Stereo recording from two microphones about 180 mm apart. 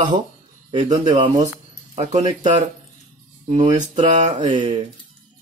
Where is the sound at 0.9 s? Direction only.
20° right (ahead or behind).